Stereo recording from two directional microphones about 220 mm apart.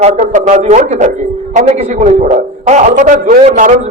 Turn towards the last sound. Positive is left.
turn(degrees=-35)  # may be behind; listen again after turning